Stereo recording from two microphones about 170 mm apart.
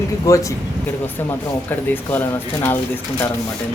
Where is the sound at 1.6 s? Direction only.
10° left (ahead or behind).